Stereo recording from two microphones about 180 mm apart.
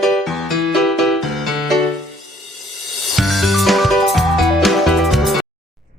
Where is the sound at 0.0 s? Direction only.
Centre (ahead or behind).